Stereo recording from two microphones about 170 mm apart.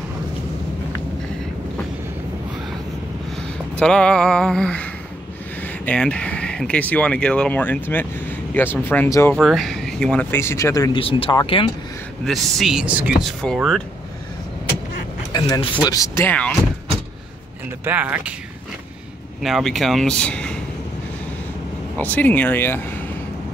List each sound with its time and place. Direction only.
3.7 s speech: 5° left (ahead or behind)
9.3 s speech: centre (ahead or behind); by 11.0 s 20° left (ahead or behind)
11.0 s speech: 35° left (ahead or behind)
12.3 s speech: centre (ahead or behind)
15.3 s speech: 25° left (ahead or behind)
17.8 s speech: 10° right (ahead or behind)
19.4 s speech: centre (ahead or behind)
21.9 s speech: 10° left (ahead or behind)